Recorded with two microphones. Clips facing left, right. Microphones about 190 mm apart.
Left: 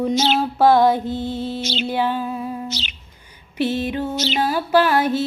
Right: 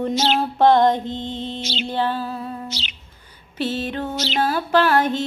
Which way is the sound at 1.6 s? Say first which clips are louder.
Left 3 dB; 45° left (ahead or behind).